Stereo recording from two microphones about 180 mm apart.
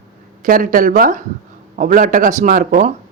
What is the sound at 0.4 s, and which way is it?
Speech, 50° right (ahead or behind).